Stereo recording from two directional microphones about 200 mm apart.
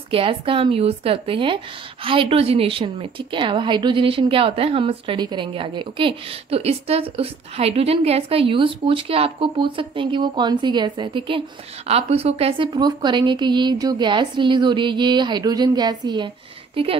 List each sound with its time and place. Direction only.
0.1 s a woman's voice: 25° right (ahead or behind)